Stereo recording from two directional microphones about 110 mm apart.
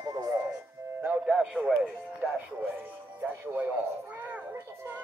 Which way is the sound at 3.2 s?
15° right (ahead or behind).